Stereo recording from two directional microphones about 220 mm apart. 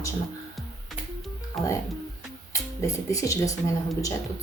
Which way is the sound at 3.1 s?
15° left (ahead or behind).